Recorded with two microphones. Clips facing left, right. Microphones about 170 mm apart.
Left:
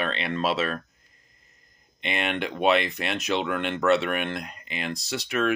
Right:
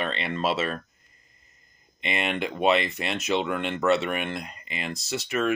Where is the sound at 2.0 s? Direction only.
Centre (ahead or behind).